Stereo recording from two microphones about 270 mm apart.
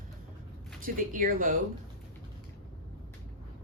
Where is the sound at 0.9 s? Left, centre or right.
Right.